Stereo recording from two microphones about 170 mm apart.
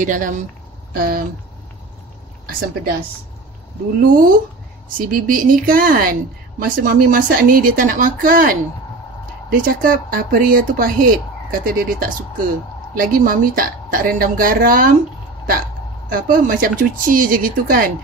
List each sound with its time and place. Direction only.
0.0 s speech: 50° right (ahead or behind)
0.9 s speech: 60° right (ahead or behind)
4.0 s speech: 55° right (ahead or behind)
16.1 s speech: 55° right (ahead or behind)